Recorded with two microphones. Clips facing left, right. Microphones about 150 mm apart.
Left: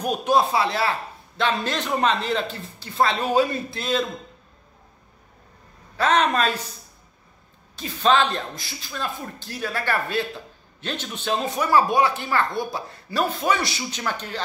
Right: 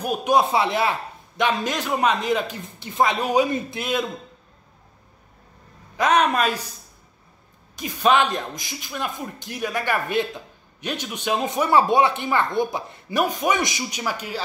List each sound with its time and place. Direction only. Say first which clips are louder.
0.0 s speech: right 1 dB; 10° right (ahead or behind)
5.9 s speech: right 1 dB; 10° right (ahead or behind)
7.7 s speech: right 1 dB; 15° right (ahead or behind)